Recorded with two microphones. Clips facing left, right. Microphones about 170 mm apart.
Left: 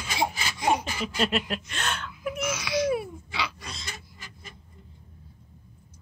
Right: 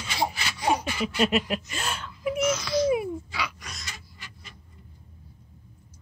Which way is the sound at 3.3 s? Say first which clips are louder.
Left 1 dB; 25° left (ahead or behind).